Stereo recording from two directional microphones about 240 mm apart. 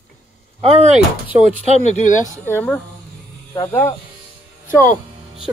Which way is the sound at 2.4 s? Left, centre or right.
Centre.